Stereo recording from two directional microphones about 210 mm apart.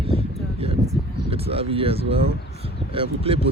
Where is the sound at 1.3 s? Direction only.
25° right (ahead or behind).